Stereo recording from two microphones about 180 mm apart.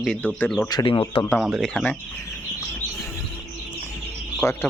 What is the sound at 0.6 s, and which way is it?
Speech, 25° left (ahead or behind).